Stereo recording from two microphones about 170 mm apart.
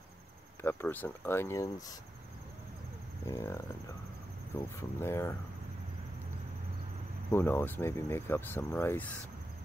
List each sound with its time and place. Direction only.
0.6 s speech: 10° left (ahead or behind)
3.3 s speech: 15° left (ahead or behind)
7.2 s speech: 15° left (ahead or behind)